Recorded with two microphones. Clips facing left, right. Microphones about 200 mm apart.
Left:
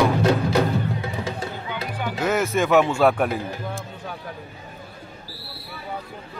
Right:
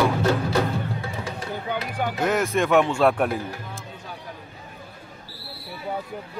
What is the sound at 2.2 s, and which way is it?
Speech, centre (ahead or behind).